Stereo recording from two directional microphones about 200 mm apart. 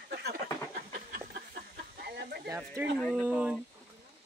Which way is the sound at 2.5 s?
15° right (ahead or behind).